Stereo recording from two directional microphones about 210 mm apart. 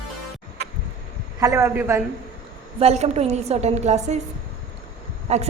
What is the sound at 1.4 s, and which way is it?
Speech, 15° right (ahead or behind).